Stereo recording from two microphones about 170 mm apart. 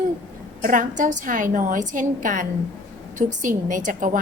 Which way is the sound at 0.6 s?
50° right (ahead or behind).